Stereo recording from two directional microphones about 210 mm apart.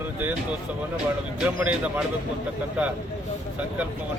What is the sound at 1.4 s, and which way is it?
Speech, 5° right (ahead or behind).